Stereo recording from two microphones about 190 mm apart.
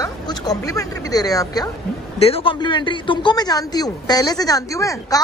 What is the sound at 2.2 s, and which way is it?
Speech, 30° left (ahead or behind).